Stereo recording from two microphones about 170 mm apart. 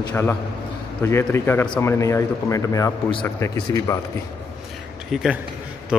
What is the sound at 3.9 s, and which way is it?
Speech, 20° left (ahead or behind).